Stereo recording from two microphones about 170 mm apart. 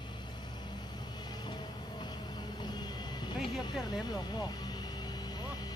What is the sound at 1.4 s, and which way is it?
Vehicle, 25° left (ahead or behind).